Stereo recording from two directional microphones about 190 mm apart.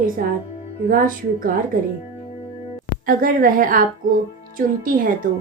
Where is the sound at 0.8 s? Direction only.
45° right (ahead or behind).